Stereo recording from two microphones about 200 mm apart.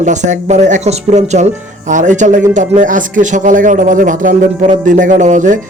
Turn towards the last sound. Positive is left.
turn(degrees=-40)  # may be behind; listen again after turning